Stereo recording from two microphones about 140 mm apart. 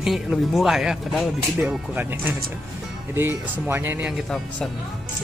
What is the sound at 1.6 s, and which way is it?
Speech, 10° right (ahead or behind).